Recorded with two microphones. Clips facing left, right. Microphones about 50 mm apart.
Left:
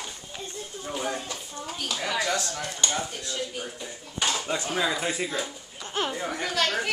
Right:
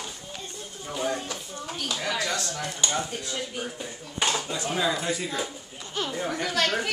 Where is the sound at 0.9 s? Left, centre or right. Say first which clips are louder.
Right 2 dB; centre.